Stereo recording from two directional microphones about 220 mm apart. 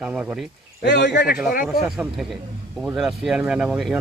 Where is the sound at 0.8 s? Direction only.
55° left (ahead or behind).